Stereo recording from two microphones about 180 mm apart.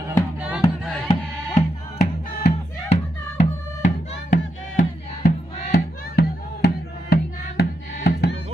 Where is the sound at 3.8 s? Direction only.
45° left (ahead or behind).